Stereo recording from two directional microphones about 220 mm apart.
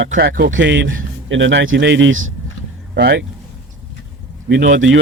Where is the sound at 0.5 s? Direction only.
55° right (ahead or behind).